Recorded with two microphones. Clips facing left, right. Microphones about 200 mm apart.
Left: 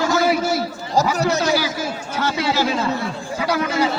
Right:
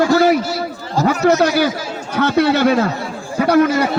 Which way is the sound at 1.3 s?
60° right (ahead or behind).